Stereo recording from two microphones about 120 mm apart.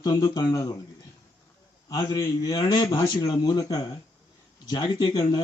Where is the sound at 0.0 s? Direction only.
35° left (ahead or behind).